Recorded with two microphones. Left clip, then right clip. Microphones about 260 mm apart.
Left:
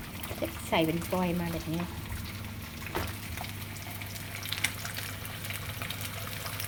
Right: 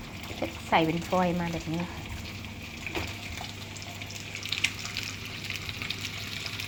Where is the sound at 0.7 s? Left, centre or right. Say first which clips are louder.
Right 4 dB; centre.